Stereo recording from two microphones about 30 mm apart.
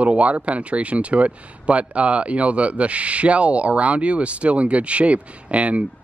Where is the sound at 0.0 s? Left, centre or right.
Right.